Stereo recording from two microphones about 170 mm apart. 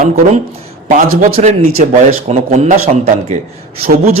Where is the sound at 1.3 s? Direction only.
40° right (ahead or behind).